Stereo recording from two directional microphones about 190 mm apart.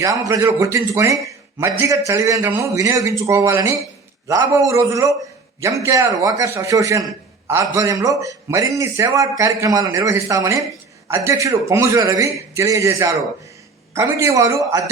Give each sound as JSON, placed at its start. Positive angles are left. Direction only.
{"t": 0.0, "sound": "a man's voice", "side_deg": -15}